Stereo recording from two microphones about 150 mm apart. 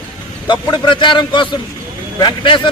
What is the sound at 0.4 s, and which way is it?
A man's voice, 30° left (ahead or behind).